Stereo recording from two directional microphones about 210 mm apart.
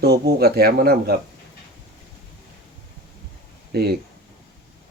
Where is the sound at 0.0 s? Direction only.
50° right (ahead or behind).